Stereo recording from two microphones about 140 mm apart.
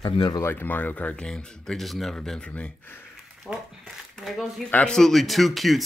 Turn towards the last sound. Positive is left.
turn(degrees=0)  # may be behind; listen again after turning